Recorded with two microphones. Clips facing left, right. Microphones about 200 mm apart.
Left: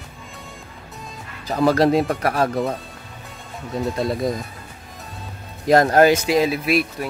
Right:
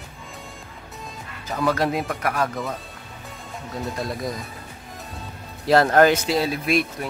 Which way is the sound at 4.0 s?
25° left (ahead or behind).